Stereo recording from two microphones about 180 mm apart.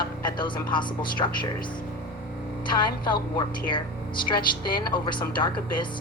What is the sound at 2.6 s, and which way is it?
Speech, 25° left (ahead or behind).